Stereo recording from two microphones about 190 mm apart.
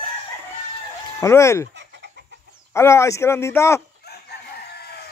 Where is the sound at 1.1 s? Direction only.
15° left (ahead or behind).